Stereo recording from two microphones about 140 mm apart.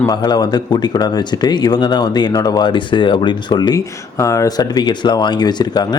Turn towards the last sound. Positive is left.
turn(degrees=30)  # may be behind; listen again after turning